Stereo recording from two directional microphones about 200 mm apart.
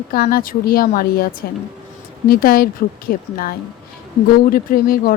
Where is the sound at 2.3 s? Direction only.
45° left (ahead or behind).